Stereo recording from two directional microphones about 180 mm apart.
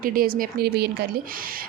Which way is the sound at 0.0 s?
55° right (ahead or behind).